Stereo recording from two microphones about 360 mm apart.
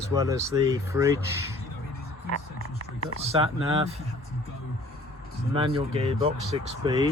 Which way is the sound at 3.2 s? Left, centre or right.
Centre.